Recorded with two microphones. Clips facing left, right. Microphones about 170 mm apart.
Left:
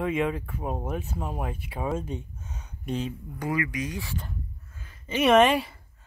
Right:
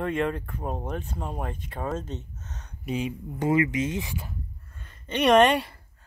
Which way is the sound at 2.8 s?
10° right (ahead or behind).